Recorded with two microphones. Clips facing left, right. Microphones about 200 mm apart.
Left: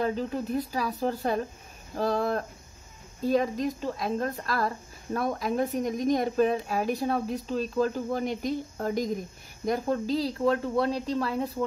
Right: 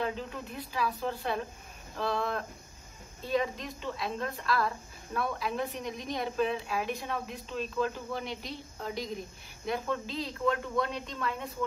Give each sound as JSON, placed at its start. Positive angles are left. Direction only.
{"t": 0.0, "sound": "a woman's voice", "side_deg": 40}